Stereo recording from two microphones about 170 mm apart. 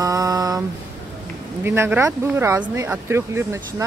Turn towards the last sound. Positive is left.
turn(degrees=-15)  # may be behind; listen again after turning